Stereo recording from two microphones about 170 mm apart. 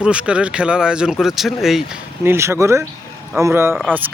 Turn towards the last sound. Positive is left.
turn(degrees=-15)  # may be behind; listen again after turning